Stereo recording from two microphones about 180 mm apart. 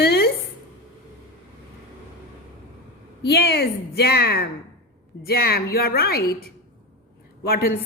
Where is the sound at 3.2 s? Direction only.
65° left (ahead or behind).